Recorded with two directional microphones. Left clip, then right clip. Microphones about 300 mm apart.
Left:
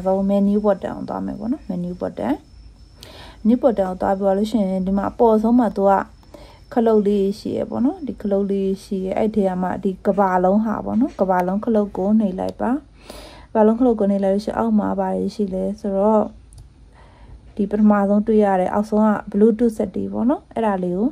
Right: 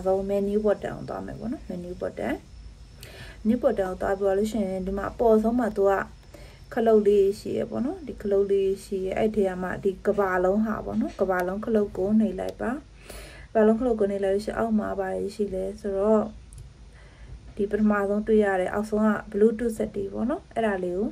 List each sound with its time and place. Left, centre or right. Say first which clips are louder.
0.8 s speech: left 6 dB; left
17.6 s speech: left 7 dB; left